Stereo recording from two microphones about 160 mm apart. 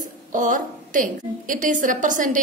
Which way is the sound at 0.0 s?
55° right (ahead or behind).